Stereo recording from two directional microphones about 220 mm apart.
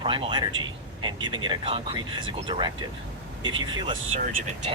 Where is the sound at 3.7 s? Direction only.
20° right (ahead or behind).